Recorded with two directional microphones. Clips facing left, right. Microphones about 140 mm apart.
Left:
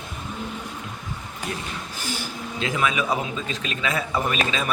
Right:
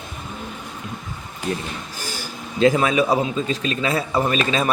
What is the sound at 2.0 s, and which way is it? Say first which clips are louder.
A man's voice: left 1 dB; 40° right (ahead or behind).